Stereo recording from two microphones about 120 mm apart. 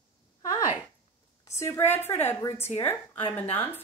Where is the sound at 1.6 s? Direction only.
20° left (ahead or behind).